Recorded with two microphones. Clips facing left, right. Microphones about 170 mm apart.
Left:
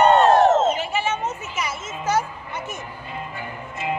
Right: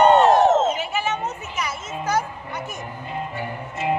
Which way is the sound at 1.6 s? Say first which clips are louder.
Even; 5° left (ahead or behind).